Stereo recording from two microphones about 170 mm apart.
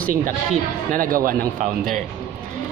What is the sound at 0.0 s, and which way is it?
A man's voice, 50° right (ahead or behind).